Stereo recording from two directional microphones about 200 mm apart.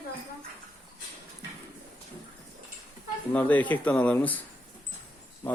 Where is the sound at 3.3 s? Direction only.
10° left (ahead or behind).